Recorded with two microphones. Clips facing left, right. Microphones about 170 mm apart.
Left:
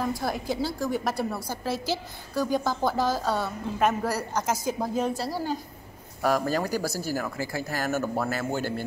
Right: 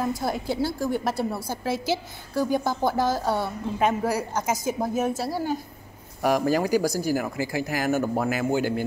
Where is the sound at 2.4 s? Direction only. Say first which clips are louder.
Right 2 dB; 15° right (ahead or behind).